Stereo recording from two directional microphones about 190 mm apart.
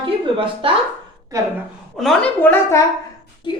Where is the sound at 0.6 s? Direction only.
30° right (ahead or behind).